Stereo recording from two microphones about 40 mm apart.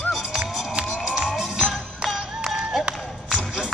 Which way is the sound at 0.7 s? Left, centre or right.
Right.